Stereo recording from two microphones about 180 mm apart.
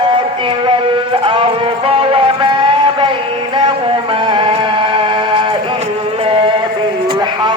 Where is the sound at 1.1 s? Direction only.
30° right (ahead or behind).